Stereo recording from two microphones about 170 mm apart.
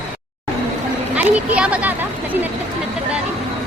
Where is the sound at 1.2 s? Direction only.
10° right (ahead or behind).